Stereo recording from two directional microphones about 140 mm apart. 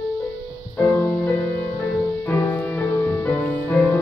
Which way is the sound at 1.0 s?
20° left (ahead or behind).